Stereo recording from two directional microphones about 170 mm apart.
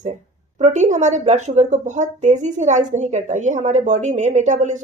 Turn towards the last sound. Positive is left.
turn(degrees=-45)  # may be behind; listen again after turning